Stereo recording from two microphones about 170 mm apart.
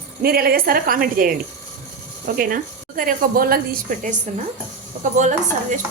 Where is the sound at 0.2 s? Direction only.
65° right (ahead or behind).